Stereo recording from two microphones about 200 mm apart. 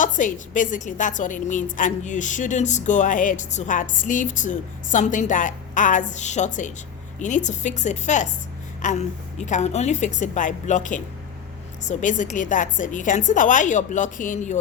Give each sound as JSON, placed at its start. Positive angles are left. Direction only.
{"t": 0.0, "sound": "speech", "side_deg": 40}